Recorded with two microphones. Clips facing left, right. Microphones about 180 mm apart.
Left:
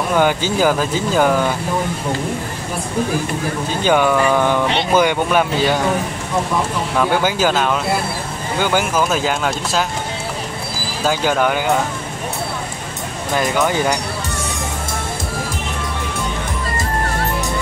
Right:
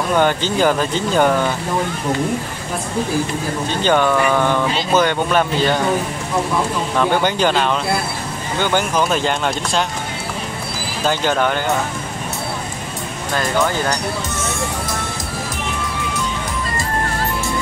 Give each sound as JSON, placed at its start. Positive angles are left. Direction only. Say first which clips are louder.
{"t": 0.1, "sound": "speech", "louder": "even", "side_deg": 10}
{"t": 3.8, "sound": "speech", "louder": "left 1 dB", "side_deg": 10}
{"t": 7.0, "sound": "speech", "louder": "even", "side_deg": 5}
{"t": 11.1, "sound": "speech", "louder": "left 1 dB", "side_deg": 5}
{"t": 13.3, "sound": "speech", "louder": "left 1 dB", "side_deg": 15}